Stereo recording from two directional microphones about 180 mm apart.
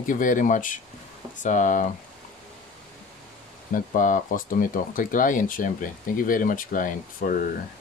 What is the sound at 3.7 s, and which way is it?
Speech, 45° left (ahead or behind).